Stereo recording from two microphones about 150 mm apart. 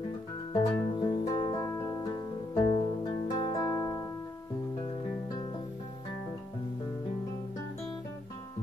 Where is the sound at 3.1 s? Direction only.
35° left (ahead or behind).